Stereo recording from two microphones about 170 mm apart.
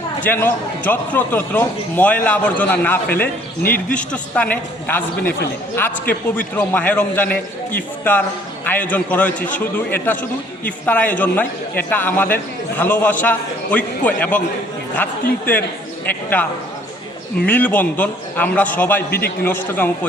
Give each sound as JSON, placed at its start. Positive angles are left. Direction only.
{"t": 0.3, "sound": "a man's voice", "side_deg": 10}
{"t": 3.6, "sound": "speech", "side_deg": 60}
{"t": 3.9, "sound": "a man's voice", "side_deg": 5}
{"t": 17.4, "sound": "a man's voice", "side_deg": 10}